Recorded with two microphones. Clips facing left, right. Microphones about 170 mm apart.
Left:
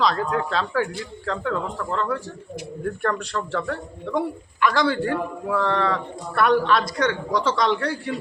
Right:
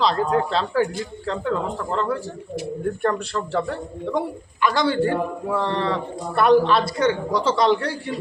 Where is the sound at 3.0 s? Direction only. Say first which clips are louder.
Right 1 dB; 25° right (ahead or behind).